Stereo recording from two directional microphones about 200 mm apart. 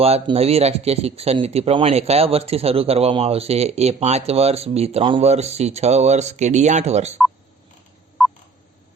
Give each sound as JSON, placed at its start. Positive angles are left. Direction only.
{"t": 0.0, "sound": "speech", "side_deg": -30}
{"t": 8.2, "sound": "telephone dialing", "side_deg": 0}